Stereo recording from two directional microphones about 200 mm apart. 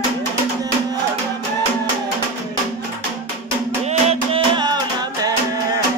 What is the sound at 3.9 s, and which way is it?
Music, 30° right (ahead or behind).